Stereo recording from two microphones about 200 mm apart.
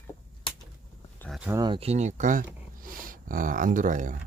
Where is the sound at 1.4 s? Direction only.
15° right (ahead or behind); by 4.1 s 40° right (ahead or behind).